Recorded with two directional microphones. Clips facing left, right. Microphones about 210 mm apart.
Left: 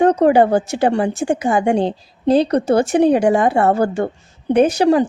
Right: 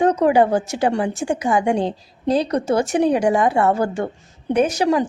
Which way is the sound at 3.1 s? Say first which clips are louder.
Left 4 dB; 55° left (ahead or behind).